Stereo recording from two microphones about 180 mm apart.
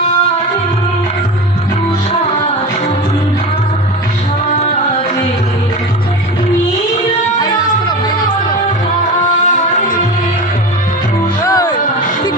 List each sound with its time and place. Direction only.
11.4 s music: 20° left (ahead or behind)